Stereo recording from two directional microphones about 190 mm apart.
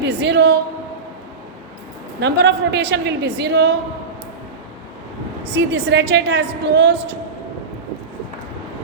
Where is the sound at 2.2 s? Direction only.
65° right (ahead or behind).